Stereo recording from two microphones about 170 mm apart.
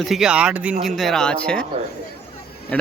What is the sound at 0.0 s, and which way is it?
Speech, centre (ahead or behind).